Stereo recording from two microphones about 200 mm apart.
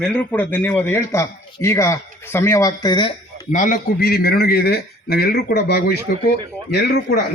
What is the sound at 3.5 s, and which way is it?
A man's voice, 40° left (ahead or behind).